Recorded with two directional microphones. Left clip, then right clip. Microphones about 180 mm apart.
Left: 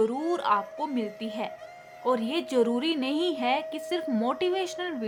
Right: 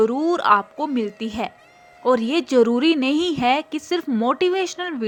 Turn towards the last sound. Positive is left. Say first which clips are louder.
# right 6 dB
turn(degrees=-30)  # may be behind; listen again after turning